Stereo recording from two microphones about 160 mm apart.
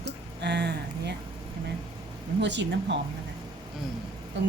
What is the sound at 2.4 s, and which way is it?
Speech, 90° right.